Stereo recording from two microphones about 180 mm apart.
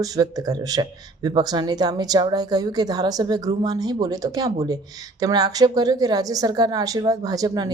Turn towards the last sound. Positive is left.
turn(degrees=-20)  # may be behind; listen again after turning